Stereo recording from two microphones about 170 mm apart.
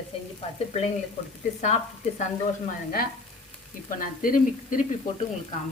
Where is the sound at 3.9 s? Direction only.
55° left (ahead or behind).